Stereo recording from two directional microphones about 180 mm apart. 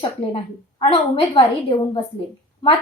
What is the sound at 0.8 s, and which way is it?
Speech, 30° left (ahead or behind).